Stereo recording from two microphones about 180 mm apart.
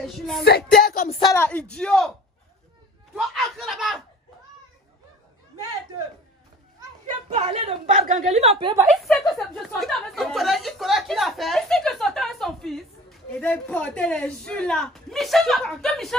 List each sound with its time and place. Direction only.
0.0 s a sound: centre (ahead or behind)
0.4 s a sound: 60° left (ahead or behind)
1.2 s speech: 15° left (ahead or behind)
3.2 s a woman's voice: centre (ahead or behind)
7.2 s a woman's voice: 35° right (ahead or behind)
9.0 s a woman's voice: centre (ahead or behind)